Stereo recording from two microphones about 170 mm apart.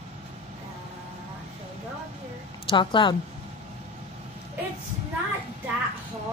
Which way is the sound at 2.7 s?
30° left (ahead or behind).